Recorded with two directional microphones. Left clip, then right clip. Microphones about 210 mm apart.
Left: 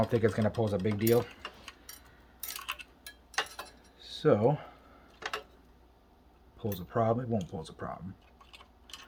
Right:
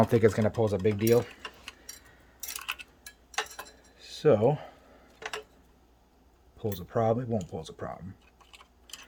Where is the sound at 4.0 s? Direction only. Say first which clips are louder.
Right 3 dB; 45° right (ahead or behind).